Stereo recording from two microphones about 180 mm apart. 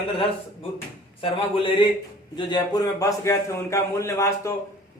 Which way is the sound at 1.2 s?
30° left (ahead or behind).